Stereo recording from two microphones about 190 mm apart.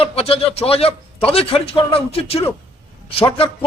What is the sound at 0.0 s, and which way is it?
A man's voice, 30° left (ahead or behind).